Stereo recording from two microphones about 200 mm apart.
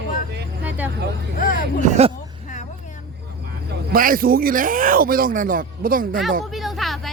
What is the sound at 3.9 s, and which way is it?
Speech, 45° right (ahead or behind).